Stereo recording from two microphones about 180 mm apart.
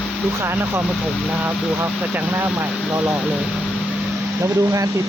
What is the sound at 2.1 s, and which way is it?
Speech, 10° right (ahead or behind).